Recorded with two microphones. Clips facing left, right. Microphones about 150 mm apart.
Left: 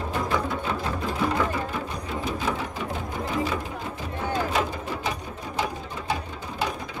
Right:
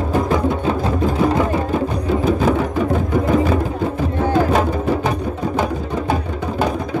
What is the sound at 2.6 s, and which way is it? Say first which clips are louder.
Music: right 13 dB; 55° right (ahead or behind).